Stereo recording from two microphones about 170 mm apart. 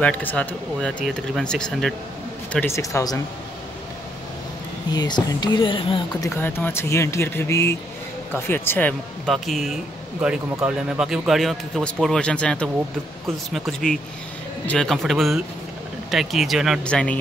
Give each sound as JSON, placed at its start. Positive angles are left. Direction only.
{"t": 0.0, "sound": "a man's voice", "side_deg": 10}
{"t": 2.5, "sound": "speech", "side_deg": 15}
{"t": 4.9, "sound": "speech", "side_deg": 25}
{"t": 6.3, "sound": "a man's voice", "side_deg": 15}